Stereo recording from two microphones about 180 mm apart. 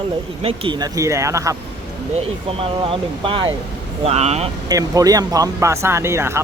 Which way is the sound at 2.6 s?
30° right (ahead or behind).